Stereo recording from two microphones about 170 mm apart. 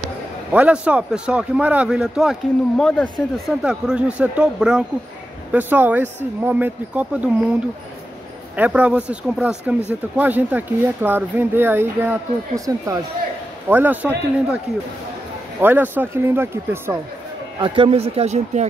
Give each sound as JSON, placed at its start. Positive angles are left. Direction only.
{"t": 0.5, "sound": "a man's voice", "side_deg": -10}
{"t": 8.5, "sound": "speech", "side_deg": -10}
{"t": 15.6, "sound": "speech", "side_deg": -10}
{"t": 17.6, "sound": "speech", "side_deg": -30}